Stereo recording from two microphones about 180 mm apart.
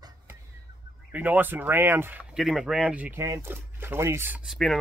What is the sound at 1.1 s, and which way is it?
Speech, 10° right (ahead or behind).